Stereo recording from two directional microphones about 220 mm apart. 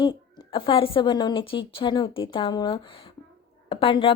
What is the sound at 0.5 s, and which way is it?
A woman's voice, 25° left (ahead or behind).